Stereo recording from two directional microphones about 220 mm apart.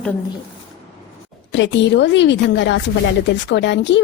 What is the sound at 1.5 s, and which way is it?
Speech, 55° left (ahead or behind).